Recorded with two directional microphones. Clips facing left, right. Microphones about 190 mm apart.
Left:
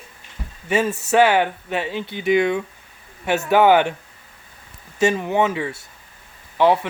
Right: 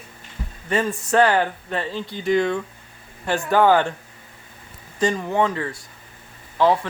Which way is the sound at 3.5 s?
20° left (ahead or behind).